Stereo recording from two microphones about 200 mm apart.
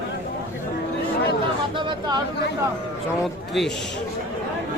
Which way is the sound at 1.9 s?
20° right (ahead or behind).